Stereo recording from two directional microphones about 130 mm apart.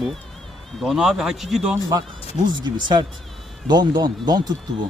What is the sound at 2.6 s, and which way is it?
Speech, 35° right (ahead or behind).